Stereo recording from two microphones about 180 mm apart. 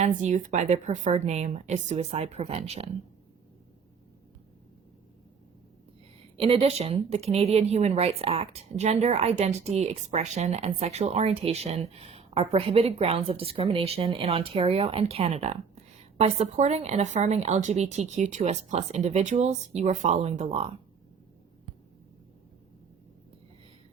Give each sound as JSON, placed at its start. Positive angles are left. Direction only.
{"t": 0.0, "sound": "speech", "side_deg": -40}
{"t": 6.3, "sound": "speech", "side_deg": -30}